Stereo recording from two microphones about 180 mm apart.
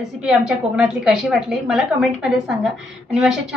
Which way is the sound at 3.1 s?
5° right (ahead or behind).